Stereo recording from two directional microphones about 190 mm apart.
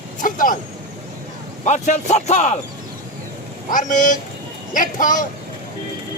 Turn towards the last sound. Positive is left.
turn(degrees=45)  # may be behind; listen again after turning